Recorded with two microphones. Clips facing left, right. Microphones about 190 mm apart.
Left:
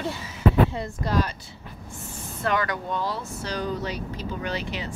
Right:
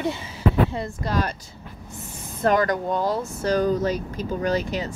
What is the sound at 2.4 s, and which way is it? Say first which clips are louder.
Speech: right 6 dB; 40° right (ahead or behind).